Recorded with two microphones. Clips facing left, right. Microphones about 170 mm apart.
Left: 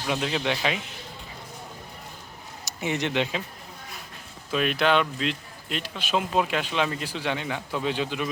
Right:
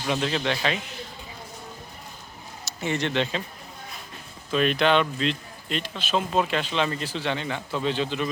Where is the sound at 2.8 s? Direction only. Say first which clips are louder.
Right 1 dB; 15° left (ahead or behind).